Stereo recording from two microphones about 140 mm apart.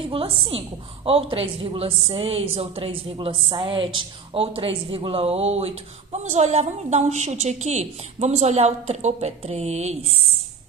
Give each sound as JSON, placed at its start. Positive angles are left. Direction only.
{"t": 0.1, "sound": "a woman's voice", "side_deg": -40}